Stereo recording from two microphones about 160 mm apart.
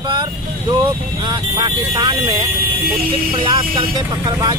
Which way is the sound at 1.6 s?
30° right (ahead or behind).